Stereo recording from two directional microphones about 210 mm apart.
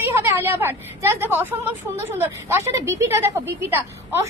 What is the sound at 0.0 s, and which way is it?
A woman's voice, 10° right (ahead or behind).